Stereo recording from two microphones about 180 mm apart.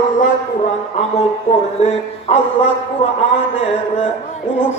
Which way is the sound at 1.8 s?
35° left (ahead or behind).